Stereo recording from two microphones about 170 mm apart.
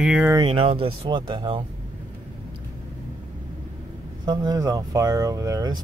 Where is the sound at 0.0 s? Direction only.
5° right (ahead or behind).